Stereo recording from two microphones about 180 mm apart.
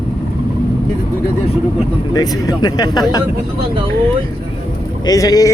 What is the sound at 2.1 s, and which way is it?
Speech, 20° left (ahead or behind).